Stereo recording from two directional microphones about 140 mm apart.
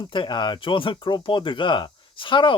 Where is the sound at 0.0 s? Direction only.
35° left (ahead or behind).